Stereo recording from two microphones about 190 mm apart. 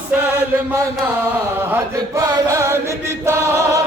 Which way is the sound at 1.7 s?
15° right (ahead or behind).